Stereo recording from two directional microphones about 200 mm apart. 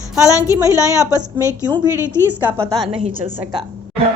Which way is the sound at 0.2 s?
15° left (ahead or behind).